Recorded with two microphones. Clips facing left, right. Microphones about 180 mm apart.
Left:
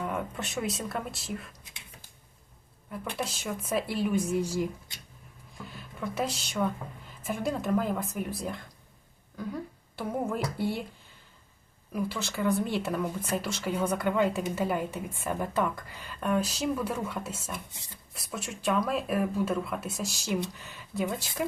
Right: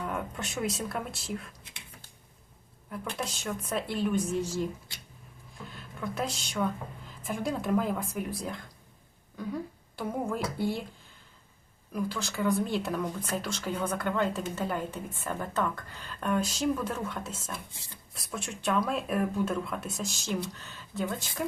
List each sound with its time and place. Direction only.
0.0 s speech: centre (ahead or behind)
2.9 s speech: 5° left (ahead or behind)
11.9 s speech: 5° left (ahead or behind)